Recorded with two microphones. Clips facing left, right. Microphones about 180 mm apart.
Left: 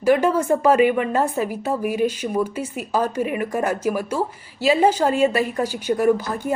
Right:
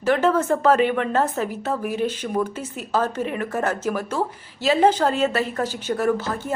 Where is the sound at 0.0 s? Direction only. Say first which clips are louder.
Left 2 dB; 10° left (ahead or behind).